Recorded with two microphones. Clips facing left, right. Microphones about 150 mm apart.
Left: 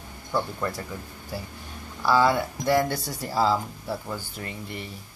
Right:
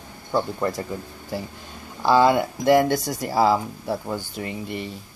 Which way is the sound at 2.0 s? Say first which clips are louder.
Right 4 dB; 20° right (ahead or behind).